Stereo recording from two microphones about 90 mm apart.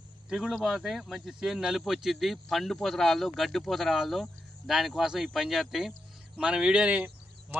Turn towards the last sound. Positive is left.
turn(degrees=-25)  # may be behind; listen again after turning